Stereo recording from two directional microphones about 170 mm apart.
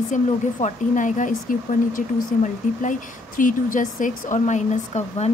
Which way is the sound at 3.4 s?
50° left (ahead or behind).